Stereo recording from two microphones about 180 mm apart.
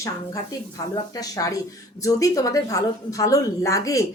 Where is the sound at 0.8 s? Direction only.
20° left (ahead or behind).